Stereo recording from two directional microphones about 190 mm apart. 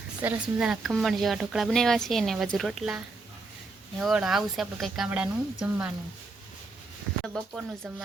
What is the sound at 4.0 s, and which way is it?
Speech, centre (ahead or behind).